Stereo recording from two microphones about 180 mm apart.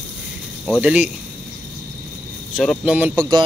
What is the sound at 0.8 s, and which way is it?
Speech, 10° right (ahead or behind).